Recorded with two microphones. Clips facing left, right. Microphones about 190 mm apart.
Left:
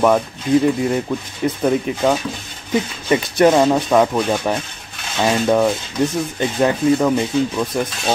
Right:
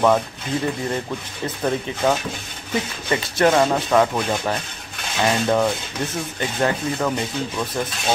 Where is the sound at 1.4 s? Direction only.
15° left (ahead or behind).